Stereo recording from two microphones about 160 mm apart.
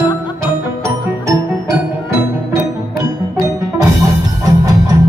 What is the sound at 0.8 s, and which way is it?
Music, 20° right (ahead or behind).